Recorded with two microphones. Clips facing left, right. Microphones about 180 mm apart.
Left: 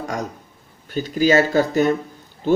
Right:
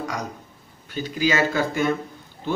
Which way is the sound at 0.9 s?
45° left (ahead or behind).